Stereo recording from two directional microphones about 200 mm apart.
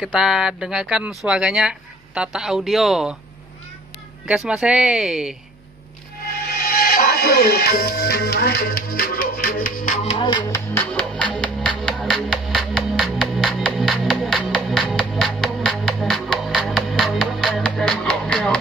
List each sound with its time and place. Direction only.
0.0 s speech: 5° right (ahead or behind)
4.5 s speech: 5° right (ahead or behind)
6.5 s speech: 50° left (ahead or behind)
10.0 s music: 25° left (ahead or behind); by 18.6 s 5° left (ahead or behind)